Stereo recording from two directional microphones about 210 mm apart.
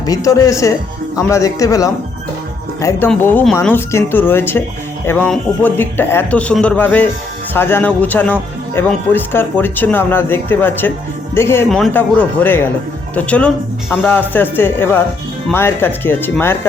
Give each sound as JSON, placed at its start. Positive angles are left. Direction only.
{"t": 0.0, "sound": "speech", "side_deg": 15}